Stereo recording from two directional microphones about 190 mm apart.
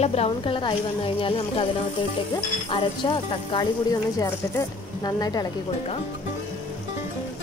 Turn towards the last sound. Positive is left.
turn(degrees=20)  # may be behind; listen again after turning